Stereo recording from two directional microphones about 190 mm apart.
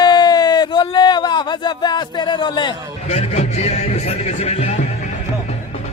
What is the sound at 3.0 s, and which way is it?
A man's voice, 35° left (ahead or behind).